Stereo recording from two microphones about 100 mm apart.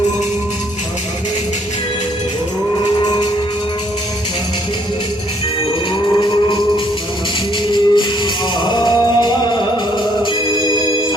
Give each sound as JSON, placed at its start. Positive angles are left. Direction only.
{"t": 3.0, "sound": "music", "side_deg": 45}
{"t": 7.7, "sound": "music", "side_deg": 50}